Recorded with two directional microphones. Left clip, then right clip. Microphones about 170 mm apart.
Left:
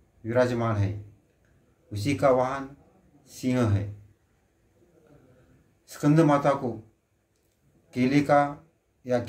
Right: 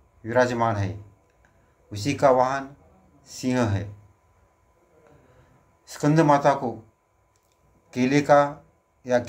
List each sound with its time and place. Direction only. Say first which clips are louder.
0.2 s speech: right 3 dB; 15° left (ahead or behind)
5.9 s speech: right 3 dB; 15° left (ahead or behind)
7.9 s speech: right 4 dB; 15° left (ahead or behind)